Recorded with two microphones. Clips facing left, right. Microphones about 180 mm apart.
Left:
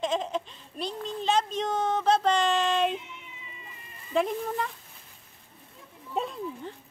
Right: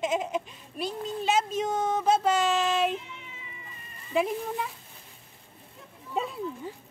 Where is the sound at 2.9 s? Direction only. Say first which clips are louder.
Right 1 dB; 20° left (ahead or behind).